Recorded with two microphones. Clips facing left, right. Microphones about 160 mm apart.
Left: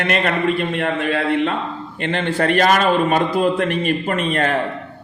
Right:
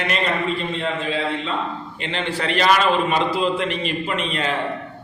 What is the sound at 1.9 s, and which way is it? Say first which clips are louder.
Speech: left 7 dB; 55° left (ahead or behind).